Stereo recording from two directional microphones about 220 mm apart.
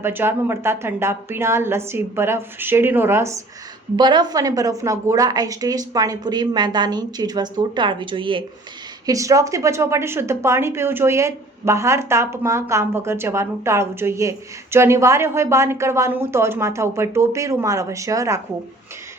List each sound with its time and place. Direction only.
0.0 s a woman's voice: 10° right (ahead or behind)